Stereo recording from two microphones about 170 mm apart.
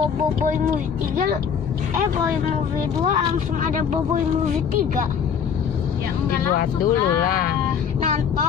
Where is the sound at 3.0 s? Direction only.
45° right (ahead or behind).